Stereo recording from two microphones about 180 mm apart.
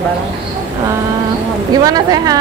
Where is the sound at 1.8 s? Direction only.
20° right (ahead or behind).